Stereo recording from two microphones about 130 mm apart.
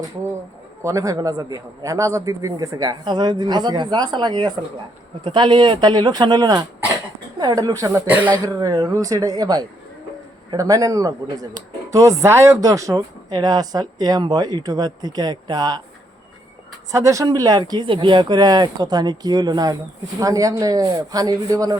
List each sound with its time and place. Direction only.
0.8 s speech: 25° right (ahead or behind)
8.0 s speech: 10° right (ahead or behind)
8.4 s speech: 30° right (ahead or behind)
16.9 s speech: 25° right (ahead or behind)